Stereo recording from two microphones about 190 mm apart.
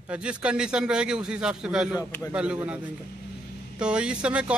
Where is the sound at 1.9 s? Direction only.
15° left (ahead or behind).